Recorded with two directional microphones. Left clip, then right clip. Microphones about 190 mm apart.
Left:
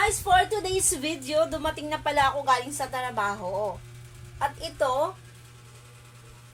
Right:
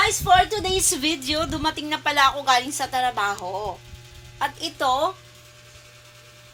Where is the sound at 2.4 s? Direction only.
20° right (ahead or behind).